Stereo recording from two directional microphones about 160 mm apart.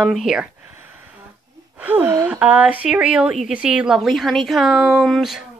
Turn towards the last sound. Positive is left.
turn(degrees=0)  # may be behind; listen again after turning